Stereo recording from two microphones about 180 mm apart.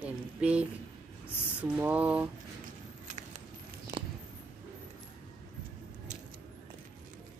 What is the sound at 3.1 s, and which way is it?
Keys jangling, 40° right (ahead or behind).